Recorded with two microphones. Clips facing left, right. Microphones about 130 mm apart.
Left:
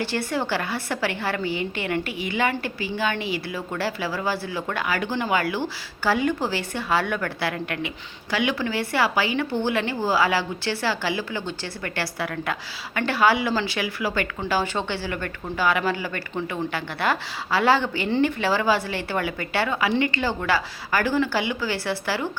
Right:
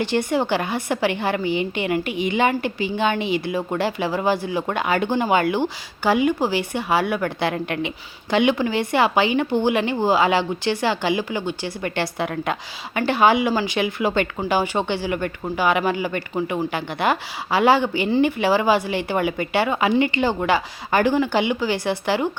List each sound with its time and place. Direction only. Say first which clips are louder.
0.0 s speech: right 5 dB; 20° right (ahead or behind)